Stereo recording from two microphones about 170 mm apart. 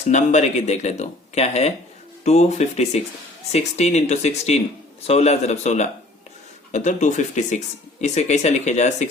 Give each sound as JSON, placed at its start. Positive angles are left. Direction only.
{"t": 0.1, "sound": "speech", "side_deg": 45}